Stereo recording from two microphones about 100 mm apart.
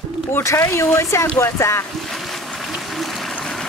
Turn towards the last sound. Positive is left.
turn(degrees=5)  # may be behind; listen again after turning